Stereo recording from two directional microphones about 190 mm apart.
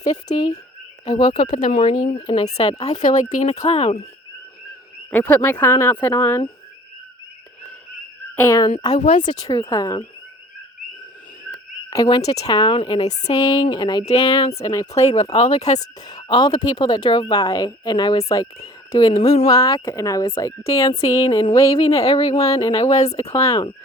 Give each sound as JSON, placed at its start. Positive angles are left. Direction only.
{"t": 0.3, "sound": "a woman's voice", "side_deg": 20}
{"t": 1.5, "sound": "speech", "side_deg": 40}
{"t": 1.7, "sound": "a woman's voice", "side_deg": 25}
{"t": 2.0, "sound": "speech", "side_deg": 40}
{"t": 5.1, "sound": "a woman's voice", "side_deg": 10}
{"t": 8.4, "sound": "a woman's voice", "side_deg": 15}
{"t": 11.9, "sound": "a woman's voice", "side_deg": 20}
{"t": 14.5, "sound": "speech", "side_deg": 15}
{"t": 14.9, "sound": "speech", "side_deg": 35}
{"t": 15.8, "sound": "a woman's voice", "side_deg": 20}
{"t": 19.5, "sound": "a woman's voice", "side_deg": 20}
{"t": 22.5, "sound": "a woman's voice", "side_deg": 30}